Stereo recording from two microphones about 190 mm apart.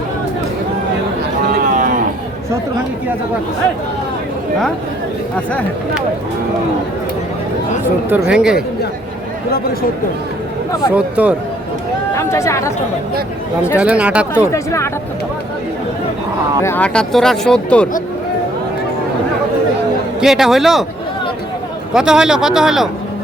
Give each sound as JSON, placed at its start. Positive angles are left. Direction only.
{"t": 1.5, "sound": "cattle", "side_deg": -45}
{"t": 8.1, "sound": "speech", "side_deg": -5}
{"t": 10.9, "sound": "speech", "side_deg": -5}
{"t": 12.1, "sound": "speech", "side_deg": 15}
{"t": 13.7, "sound": "speech", "side_deg": -5}
{"t": 14.3, "sound": "speech", "side_deg": 15}
{"t": 16.6, "sound": "speech", "side_deg": 10}
{"t": 20.2, "sound": "speech", "side_deg": 0}
{"t": 21.9, "sound": "speech", "side_deg": -5}